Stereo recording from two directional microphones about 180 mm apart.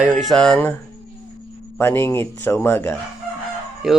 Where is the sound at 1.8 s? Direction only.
15° left (ahead or behind).